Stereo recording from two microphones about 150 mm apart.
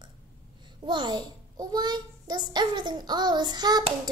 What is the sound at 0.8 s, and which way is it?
A child's voice, 30° right (ahead or behind).